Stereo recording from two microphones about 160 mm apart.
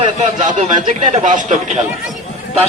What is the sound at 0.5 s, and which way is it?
Speech, 50° right (ahead or behind).